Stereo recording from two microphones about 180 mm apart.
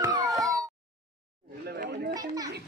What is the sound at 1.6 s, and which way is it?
Chatter, 60° right (ahead or behind).